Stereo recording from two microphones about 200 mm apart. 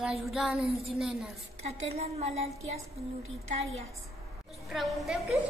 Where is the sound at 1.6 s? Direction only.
30° right (ahead or behind).